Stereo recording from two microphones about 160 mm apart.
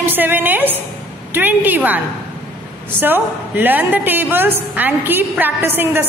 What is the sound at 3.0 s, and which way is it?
A woman's voice, 10° right (ahead or behind).